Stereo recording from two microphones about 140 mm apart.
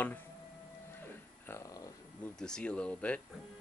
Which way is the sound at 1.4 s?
20° left (ahead or behind).